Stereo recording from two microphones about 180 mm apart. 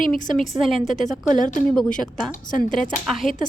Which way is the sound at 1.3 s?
45° left (ahead or behind).